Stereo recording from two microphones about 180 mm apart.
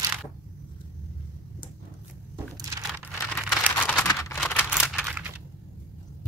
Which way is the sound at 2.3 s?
20° right (ahead or behind).